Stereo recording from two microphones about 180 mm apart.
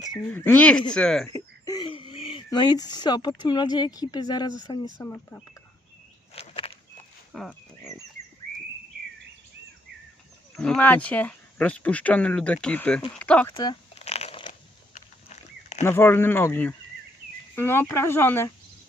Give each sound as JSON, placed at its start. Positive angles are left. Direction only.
{"t": 0.3, "sound": "speech", "side_deg": 10}
{"t": 1.3, "sound": "speech", "side_deg": 20}
{"t": 6.3, "sound": "walk", "side_deg": 35}
{"t": 7.3, "sound": "livestock", "side_deg": 0}
{"t": 10.5, "sound": "speech", "side_deg": 5}
{"t": 13.5, "sound": "speech", "side_deg": 20}
{"t": 13.9, "sound": "crumpling", "side_deg": 35}
{"t": 14.9, "sound": "livestock", "side_deg": 40}
{"t": 15.8, "sound": "speech", "side_deg": 15}